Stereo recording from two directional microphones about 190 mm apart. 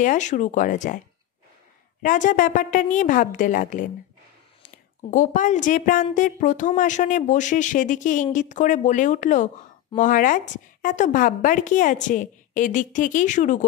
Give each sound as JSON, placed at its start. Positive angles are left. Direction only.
{"t": 0.0, "sound": "a woman's voice", "side_deg": 40}
{"t": 2.0, "sound": "a woman's voice", "side_deg": 45}